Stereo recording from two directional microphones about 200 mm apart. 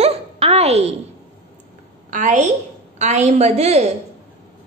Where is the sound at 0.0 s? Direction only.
30° right (ahead or behind).